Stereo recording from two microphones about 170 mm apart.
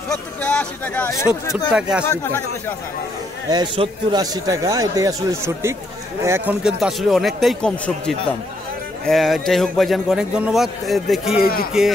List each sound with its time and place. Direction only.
0.1 s speech: 5° left (ahead or behind)
1.7 s a man's voice: 5° right (ahead or behind)
3.4 s speech: 25° right (ahead or behind)
6.6 s a man's voice: centre (ahead or behind)